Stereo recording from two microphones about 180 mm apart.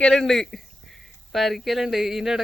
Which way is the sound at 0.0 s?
5° left (ahead or behind).